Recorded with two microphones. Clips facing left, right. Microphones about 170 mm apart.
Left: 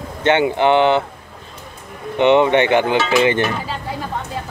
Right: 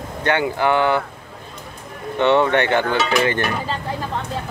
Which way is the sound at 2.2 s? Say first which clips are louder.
Left 3 dB; 15° left (ahead or behind).